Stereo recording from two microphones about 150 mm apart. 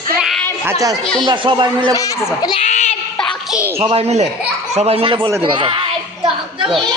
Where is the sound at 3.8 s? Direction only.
40° right (ahead or behind).